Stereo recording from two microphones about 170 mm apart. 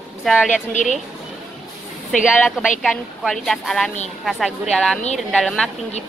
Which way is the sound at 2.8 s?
Centre (ahead or behind).